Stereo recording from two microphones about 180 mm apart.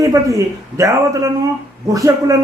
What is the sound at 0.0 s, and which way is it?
A man's voice, 20° right (ahead or behind).